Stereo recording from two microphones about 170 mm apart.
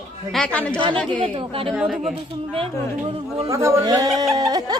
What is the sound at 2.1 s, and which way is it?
A woman's voice, 30° right (ahead or behind).